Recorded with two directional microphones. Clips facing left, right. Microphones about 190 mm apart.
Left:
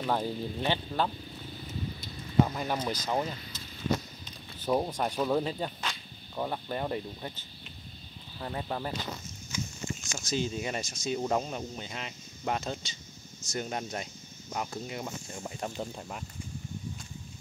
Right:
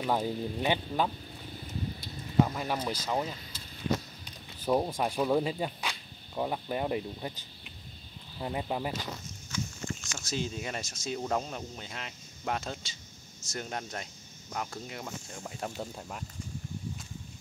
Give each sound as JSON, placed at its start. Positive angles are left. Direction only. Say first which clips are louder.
{"t": 0.0, "sound": "speech", "louder": "right 1 dB", "side_deg": -10}
{"t": 2.4, "sound": "speech", "louder": "left 1 dB", "side_deg": 0}
{"t": 9.5, "sound": "a sound", "louder": "even", "side_deg": 20}
{"t": 10.1, "sound": "speech", "louder": "left 4 dB", "side_deg": 0}